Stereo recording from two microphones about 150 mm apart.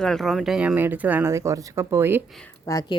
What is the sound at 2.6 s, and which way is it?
Speech, 25° left (ahead or behind).